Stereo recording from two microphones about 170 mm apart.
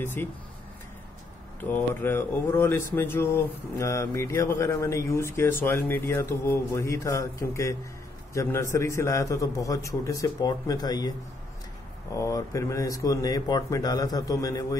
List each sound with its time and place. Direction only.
0.0 s speech: 10° left (ahead or behind)
1.6 s a man's voice: 10° left (ahead or behind)